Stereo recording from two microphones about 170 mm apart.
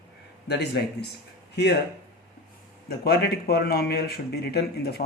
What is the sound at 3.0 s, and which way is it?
Speech, 70° left (ahead or behind).